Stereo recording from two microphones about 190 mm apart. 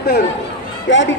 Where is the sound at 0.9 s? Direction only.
75° left (ahead or behind).